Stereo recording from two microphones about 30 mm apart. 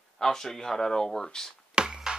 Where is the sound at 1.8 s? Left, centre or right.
Right.